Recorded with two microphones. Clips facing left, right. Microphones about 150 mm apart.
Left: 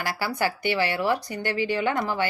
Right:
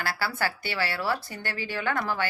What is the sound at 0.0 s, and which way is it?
A woman's voice, 15° left (ahead or behind).